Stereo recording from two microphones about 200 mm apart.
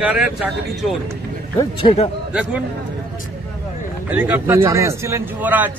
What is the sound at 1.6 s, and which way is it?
Speech, 25° left (ahead or behind).